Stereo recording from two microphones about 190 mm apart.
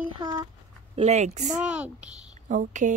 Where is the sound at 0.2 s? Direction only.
20° right (ahead or behind).